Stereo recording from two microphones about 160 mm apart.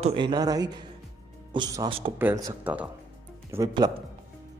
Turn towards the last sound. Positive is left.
turn(degrees=-20)  # may be behind; listen again after turning